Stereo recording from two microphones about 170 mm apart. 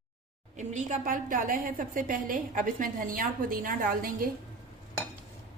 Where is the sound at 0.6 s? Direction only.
45° right (ahead or behind).